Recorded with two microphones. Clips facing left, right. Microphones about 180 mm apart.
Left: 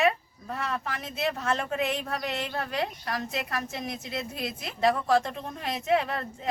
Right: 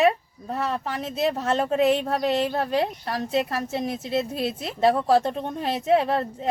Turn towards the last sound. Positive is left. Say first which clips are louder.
# right 7 dB
turn(degrees=-30)  # may be behind; listen again after turning